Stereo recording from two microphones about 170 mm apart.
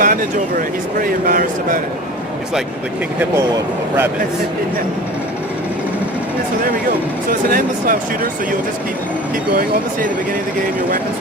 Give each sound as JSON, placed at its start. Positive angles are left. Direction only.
{"t": 0.0, "sound": "a sound", "side_deg": -55}
{"t": 1.3, "sound": "speech", "side_deg": -55}
{"t": 7.3, "sound": "speech", "side_deg": -55}